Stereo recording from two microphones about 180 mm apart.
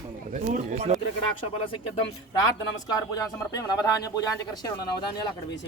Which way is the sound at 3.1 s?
20° left (ahead or behind).